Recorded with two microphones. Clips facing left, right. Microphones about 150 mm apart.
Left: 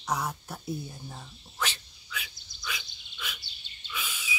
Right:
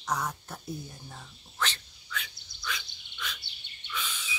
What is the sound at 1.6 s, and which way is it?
Frog, 10° left (ahead or behind).